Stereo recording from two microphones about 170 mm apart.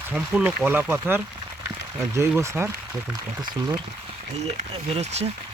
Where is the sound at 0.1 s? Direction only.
5° right (ahead or behind).